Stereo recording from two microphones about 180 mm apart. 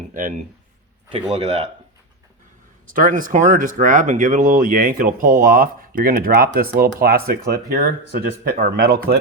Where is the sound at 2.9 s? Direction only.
50° right (ahead or behind).